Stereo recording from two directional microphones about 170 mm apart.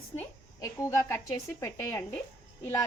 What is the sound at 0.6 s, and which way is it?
Speech, 15° left (ahead or behind).